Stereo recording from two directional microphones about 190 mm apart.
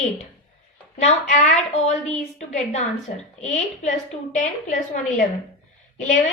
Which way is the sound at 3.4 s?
40° left (ahead or behind).